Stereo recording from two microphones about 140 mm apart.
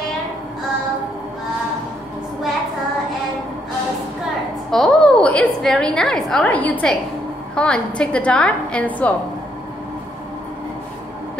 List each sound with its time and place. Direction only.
4.6 s a woman's voice: 5° left (ahead or behind)